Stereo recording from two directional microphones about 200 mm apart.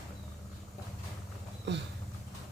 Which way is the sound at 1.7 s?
60° right (ahead or behind).